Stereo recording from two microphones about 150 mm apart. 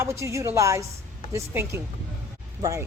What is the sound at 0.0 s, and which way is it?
A woman's voice, 20° right (ahead or behind).